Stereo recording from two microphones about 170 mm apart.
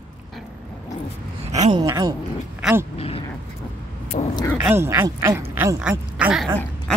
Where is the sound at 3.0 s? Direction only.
35° left (ahead or behind).